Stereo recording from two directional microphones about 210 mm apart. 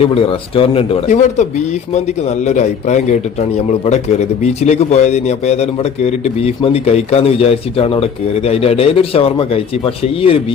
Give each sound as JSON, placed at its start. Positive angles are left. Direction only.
{"t": 0.0, "sound": "speech", "side_deg": 25}